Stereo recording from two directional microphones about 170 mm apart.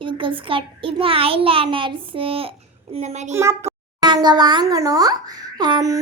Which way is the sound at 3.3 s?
15° right (ahead or behind).